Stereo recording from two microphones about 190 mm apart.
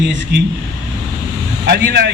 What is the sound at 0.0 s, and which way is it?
Speech, 70° right (ahead or behind).